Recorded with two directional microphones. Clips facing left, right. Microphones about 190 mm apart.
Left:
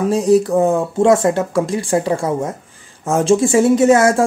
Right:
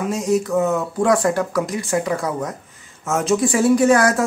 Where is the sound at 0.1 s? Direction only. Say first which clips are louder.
Left 6 dB; 35° left (ahead or behind).